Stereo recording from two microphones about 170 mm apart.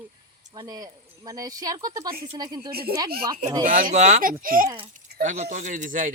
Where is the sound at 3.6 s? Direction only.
55° right (ahead or behind).